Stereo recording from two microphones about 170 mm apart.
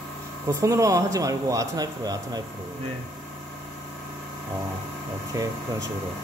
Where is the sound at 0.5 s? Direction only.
20° right (ahead or behind).